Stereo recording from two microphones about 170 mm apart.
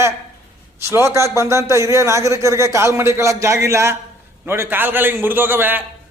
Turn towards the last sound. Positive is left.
turn(degrees=-10)  # may be behind; listen again after turning